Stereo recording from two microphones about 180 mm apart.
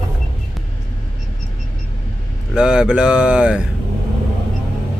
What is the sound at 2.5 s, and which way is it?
Speech, 5° right (ahead or behind).